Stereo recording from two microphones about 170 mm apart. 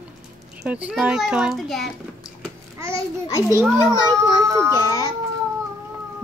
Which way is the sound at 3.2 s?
20° left (ahead or behind).